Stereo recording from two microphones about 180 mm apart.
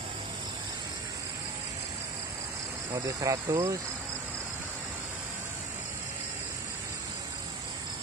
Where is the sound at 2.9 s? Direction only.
20° right (ahead or behind).